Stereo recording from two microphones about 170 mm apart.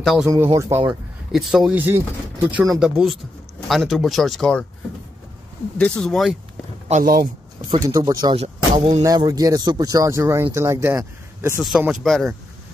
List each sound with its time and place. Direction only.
0.0 s speech: centre (ahead or behind)
0.6 s speech: 15° right (ahead or behind)
1.3 s speech: centre (ahead or behind)
5.8 s speech: 5° left (ahead or behind)
6.9 s speech: 55° right (ahead or behind)
7.9 s speech: 25° right (ahead or behind)
8.4 s speech: 35° right (ahead or behind)
9.0 s speech: 20° right (ahead or behind)
11.6 s speech: 5° right (ahead or behind)